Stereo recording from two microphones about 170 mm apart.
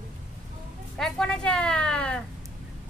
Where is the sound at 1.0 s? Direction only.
5° left (ahead or behind).